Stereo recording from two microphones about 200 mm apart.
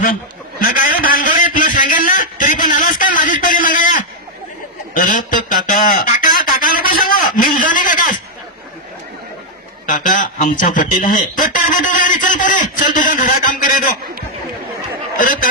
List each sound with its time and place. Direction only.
0.6 s a man's voice: 45° left (ahead or behind)
1.0 s a sound: 45° left (ahead or behind)
9.8 s speech: 40° left (ahead or behind)